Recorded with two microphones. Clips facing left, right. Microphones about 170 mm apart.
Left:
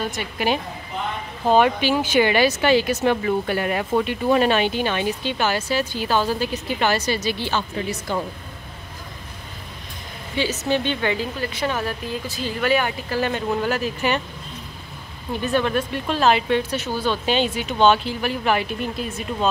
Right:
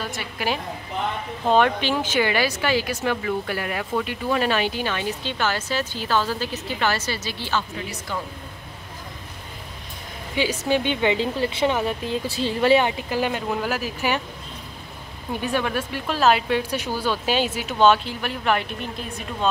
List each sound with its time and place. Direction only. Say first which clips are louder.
0.0 s speech: left 4 dB; 20° left (ahead or behind)
1.5 s speech: left 2 dB; 5° left (ahead or behind)
2.1 s speech: left 6 dB; 20° left (ahead or behind)
10.3 s speech: even; 10° right (ahead or behind)
15.4 s speech: left 4 dB; 10° right (ahead or behind)